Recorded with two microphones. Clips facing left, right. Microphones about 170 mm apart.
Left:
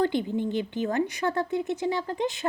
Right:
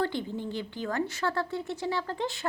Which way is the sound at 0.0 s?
20° left (ahead or behind).